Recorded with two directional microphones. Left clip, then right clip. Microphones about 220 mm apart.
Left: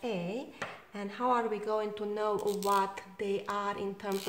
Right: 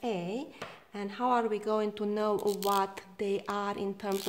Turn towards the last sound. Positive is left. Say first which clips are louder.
# right 1 dB
turn(degrees=-45)  # may be behind; listen again after turning